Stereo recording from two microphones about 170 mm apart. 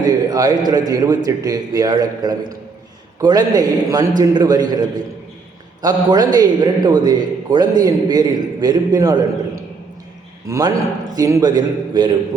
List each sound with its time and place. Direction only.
0.0 s a man's voice: 20° right (ahead or behind)
10.4 s a man's voice: 20° right (ahead or behind)